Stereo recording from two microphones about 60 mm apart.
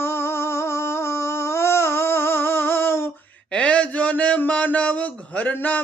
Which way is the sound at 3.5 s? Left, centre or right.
Left.